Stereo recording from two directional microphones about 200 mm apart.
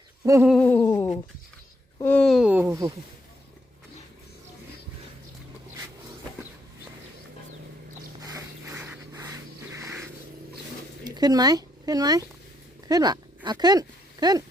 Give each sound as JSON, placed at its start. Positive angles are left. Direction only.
{"t": 0.3, "sound": "hoot", "side_deg": -10}
{"t": 0.5, "sound": "hoot", "side_deg": 10}
{"t": 2.0, "sound": "speech", "side_deg": 10}
{"t": 8.2, "sound": "a sound", "side_deg": -15}
{"t": 11.0, "sound": "speech", "side_deg": -20}